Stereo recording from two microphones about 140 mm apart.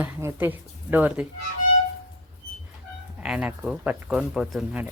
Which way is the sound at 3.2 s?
5° right (ahead or behind).